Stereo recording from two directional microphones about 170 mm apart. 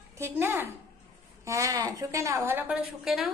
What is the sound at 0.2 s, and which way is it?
A woman's voice, 15° right (ahead or behind).